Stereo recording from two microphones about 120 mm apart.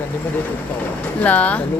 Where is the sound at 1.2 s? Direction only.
10° left (ahead or behind).